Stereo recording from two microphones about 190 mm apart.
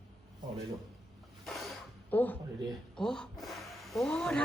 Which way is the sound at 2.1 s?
10° left (ahead or behind).